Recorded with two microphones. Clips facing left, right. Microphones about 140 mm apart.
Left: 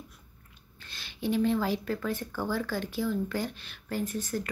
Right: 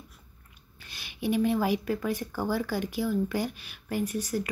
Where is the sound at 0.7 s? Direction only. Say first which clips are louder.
Right 2 dB; 15° right (ahead or behind).